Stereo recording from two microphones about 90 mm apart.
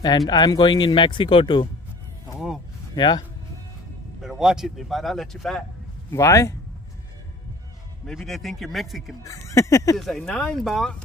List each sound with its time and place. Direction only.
0.3 s speech: 50° left (ahead or behind); by 1.7 s 70° left (ahead or behind)
3.0 s speech: 55° left (ahead or behind)
4.2 s speech: 5° right (ahead or behind)
6.1 s speech: 35° left (ahead or behind)
8.1 s speech: centre (ahead or behind)
9.2 s speech: 35° left (ahead or behind)
9.9 s speech: 5° left (ahead or behind)